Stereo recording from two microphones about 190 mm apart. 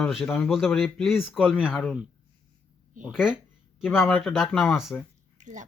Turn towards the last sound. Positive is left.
turn(degrees=-40)  # may be behind; listen again after turning